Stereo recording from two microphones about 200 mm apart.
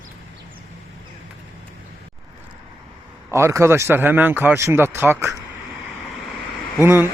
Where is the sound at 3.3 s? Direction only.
15° right (ahead or behind).